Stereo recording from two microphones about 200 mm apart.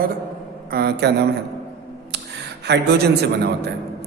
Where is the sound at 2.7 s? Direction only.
55° right (ahead or behind).